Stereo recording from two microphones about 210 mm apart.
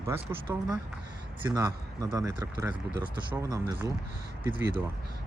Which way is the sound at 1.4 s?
15° right (ahead or behind).